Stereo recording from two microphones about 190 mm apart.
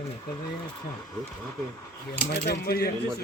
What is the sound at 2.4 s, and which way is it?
Speech, 55° left (ahead or behind).